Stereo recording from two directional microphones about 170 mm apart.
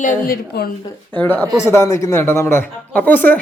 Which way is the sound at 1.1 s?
10° left (ahead or behind).